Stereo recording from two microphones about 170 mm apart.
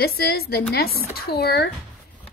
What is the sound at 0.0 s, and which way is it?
Speech, 65° left (ahead or behind).